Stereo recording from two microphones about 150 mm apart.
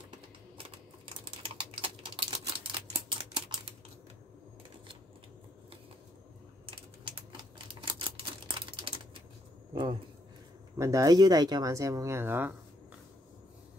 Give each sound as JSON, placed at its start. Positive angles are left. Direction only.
{"t": 0.6, "sound": "typing", "side_deg": -35}
{"t": 6.6, "sound": "typing", "side_deg": -35}
{"t": 10.8, "sound": "speech", "side_deg": -20}